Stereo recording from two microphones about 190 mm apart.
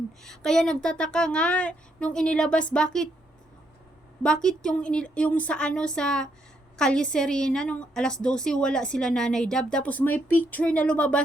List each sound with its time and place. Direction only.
0.2 s speech: centre (ahead or behind)
4.2 s speech: 5° left (ahead or behind)